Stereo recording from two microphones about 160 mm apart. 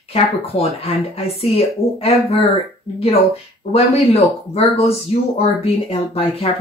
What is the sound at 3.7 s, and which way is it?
Speech, 40° left (ahead or behind).